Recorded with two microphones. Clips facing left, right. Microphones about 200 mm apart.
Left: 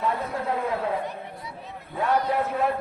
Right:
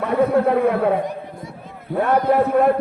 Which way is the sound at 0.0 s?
60° right (ahead or behind).